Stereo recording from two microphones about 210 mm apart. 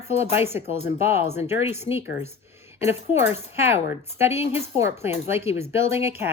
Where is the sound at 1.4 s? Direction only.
10° right (ahead or behind).